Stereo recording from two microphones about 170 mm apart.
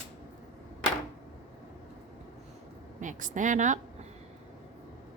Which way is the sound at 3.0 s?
50° right (ahead or behind).